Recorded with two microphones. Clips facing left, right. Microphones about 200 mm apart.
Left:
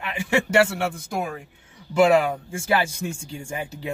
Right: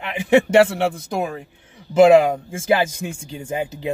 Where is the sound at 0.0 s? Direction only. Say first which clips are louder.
Right 8 dB; 20° right (ahead or behind).